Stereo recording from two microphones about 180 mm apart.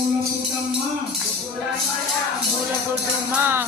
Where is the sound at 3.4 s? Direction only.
10° right (ahead or behind).